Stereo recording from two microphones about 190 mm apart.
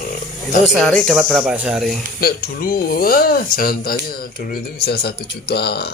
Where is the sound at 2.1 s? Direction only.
50° left (ahead or behind).